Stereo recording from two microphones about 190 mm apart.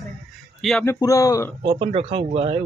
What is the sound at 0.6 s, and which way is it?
Speech, centre (ahead or behind).